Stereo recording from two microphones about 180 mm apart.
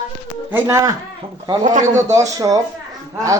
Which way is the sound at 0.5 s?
15° right (ahead or behind).